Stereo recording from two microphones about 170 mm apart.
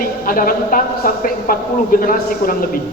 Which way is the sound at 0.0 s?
60° left (ahead or behind).